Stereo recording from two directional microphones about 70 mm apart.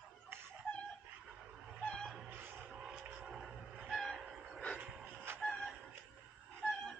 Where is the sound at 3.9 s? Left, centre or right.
Centre.